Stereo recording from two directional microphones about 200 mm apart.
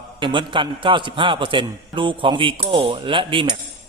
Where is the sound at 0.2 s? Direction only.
25° right (ahead or behind).